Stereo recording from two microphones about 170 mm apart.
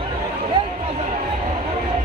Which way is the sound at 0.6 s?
30° right (ahead or behind).